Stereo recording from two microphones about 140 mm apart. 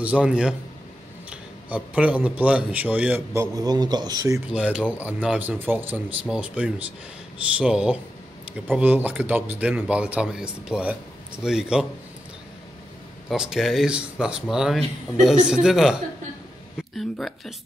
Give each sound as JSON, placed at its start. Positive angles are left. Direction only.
{"t": 0.0, "sound": "speech", "side_deg": -10}
{"t": 3.5, "sound": "speech", "side_deg": -30}
{"t": 4.5, "sound": "speech", "side_deg": -5}
{"t": 13.3, "sound": "speech", "side_deg": -5}